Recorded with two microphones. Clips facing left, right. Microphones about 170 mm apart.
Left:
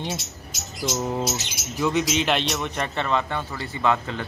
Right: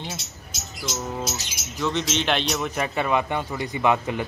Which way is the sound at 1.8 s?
10° left (ahead or behind).